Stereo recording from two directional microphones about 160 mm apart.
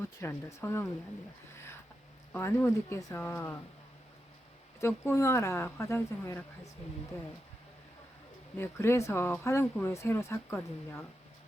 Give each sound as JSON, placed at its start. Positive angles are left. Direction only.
{"t": 0.0, "sound": "speech", "side_deg": 15}
{"t": 1.5, "sound": "a sound", "side_deg": 15}
{"t": 2.3, "sound": "speech", "side_deg": 15}
{"t": 4.8, "sound": "speech", "side_deg": 15}
{"t": 8.5, "sound": "speech", "side_deg": 15}